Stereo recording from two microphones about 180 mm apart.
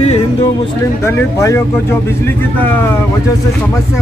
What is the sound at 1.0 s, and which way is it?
Speech, 15° left (ahead or behind).